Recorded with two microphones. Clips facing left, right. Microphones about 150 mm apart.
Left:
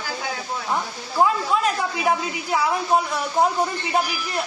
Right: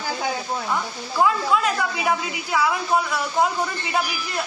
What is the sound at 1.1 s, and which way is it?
A woman's voice, 30° left (ahead or behind).